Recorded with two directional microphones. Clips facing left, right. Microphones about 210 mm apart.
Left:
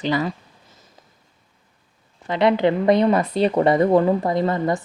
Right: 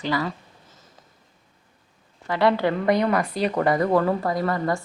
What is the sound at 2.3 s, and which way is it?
Speech, 20° left (ahead or behind).